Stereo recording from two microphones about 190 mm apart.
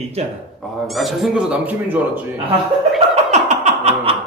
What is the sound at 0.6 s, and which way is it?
A man's voice, centre (ahead or behind).